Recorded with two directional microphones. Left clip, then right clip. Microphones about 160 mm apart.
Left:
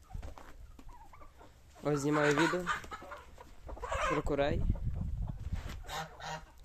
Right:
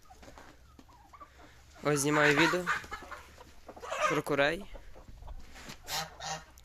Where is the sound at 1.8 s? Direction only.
Centre (ahead or behind).